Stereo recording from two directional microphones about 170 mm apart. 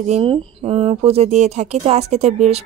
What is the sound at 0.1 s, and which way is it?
A woman's voice, 30° right (ahead or behind).